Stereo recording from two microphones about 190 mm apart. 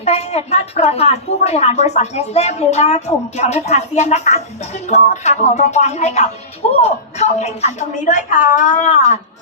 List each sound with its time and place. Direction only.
0.0 s a woman's voice: 35° left (ahead or behind)